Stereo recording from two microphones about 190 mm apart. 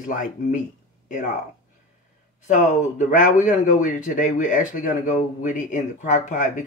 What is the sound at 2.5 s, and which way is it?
A man's voice, 40° left (ahead or behind).